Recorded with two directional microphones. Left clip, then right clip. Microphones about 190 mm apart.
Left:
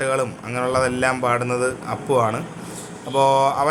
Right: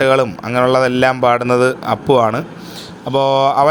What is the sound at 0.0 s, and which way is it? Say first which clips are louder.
A man's voice: right 9 dB; 35° right (ahead or behind).